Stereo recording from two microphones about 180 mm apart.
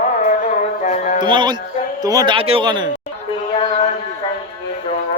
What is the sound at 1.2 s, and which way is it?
A man's voice, 25° right (ahead or behind).